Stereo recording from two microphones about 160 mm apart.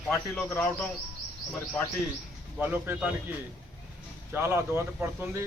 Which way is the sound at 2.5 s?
10° right (ahead or behind).